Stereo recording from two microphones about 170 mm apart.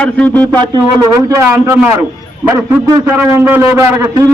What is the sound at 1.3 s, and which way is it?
A man's voice, 15° right (ahead or behind).